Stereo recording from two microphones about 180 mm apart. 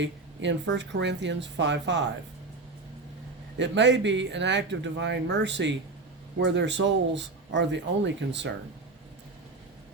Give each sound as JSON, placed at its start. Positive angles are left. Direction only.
{"t": 0.0, "sound": "speech", "side_deg": -80}
{"t": 3.6, "sound": "speech", "side_deg": -80}